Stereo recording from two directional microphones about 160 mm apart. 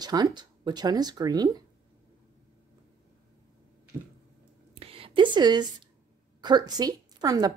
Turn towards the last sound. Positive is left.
turn(degrees=-25)  # may be behind; listen again after turning